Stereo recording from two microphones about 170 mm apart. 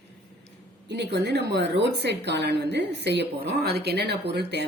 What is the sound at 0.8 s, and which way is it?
A woman's voice, 90° right.